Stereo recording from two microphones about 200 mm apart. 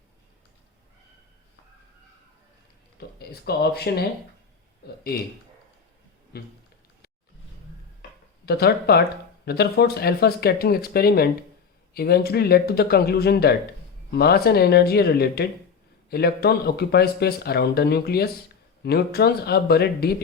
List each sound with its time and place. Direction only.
3.2 s speech: 55° left (ahead or behind)
6.3 s speech: 50° left (ahead or behind)
8.4 s speech: 50° left (ahead or behind)